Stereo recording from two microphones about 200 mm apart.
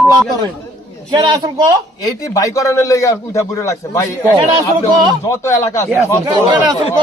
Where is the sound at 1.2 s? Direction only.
20° right (ahead or behind).